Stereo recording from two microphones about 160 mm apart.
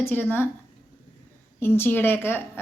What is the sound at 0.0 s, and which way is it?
Speech, 15° left (ahead or behind).